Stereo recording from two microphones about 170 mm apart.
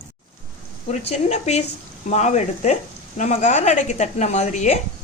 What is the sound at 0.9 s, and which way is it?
A woman's voice, 40° left (ahead or behind).